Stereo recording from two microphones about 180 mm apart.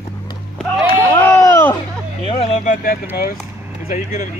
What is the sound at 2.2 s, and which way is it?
Speech, 35° left (ahead or behind).